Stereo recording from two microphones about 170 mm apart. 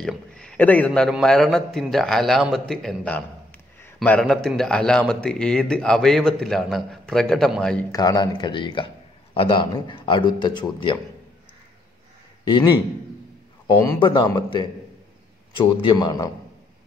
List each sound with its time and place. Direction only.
0.0 s a man's voice: 5° left (ahead or behind)
7.9 s a man's voice: 25° left (ahead or behind)
12.4 s a man's voice: 25° left (ahead or behind)
13.9 s a man's voice: 25° left (ahead or behind)